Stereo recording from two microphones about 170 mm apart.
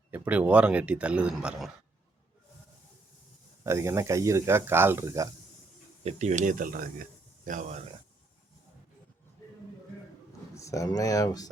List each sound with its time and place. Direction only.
0.1 s speech: 10° right (ahead or behind)
3.6 s speech: 15° right (ahead or behind)
6.0 s speech: 40° right (ahead or behind)
10.5 s speech: 20° left (ahead or behind)